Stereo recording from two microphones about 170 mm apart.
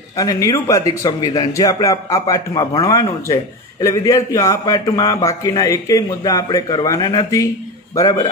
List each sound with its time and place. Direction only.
0.2 s a man's voice: 20° left (ahead or behind)